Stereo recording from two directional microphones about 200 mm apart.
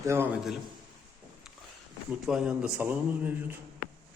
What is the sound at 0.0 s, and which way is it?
Speech, 15° right (ahead or behind).